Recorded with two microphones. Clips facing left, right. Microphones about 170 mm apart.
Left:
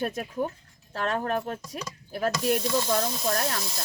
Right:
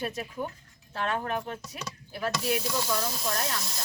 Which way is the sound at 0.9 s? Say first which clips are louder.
Left 3 dB; 40° left (ahead or behind).